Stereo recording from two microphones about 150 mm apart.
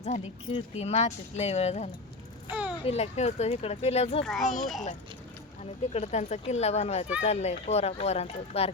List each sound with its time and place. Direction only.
0.5 s speech: 45° left (ahead or behind)
2.5 s a sound: 10° right (ahead or behind)
2.8 s speech: 45° left (ahead or behind)
4.2 s a child's voice: centre (ahead or behind)
5.9 s speech: 50° left (ahead or behind)